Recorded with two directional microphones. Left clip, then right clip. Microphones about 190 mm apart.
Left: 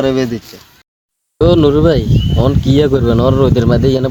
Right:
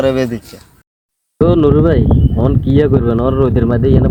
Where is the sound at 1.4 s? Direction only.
5° right (ahead or behind).